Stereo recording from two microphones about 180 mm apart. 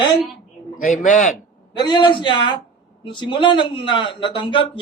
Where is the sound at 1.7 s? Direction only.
25° left (ahead or behind).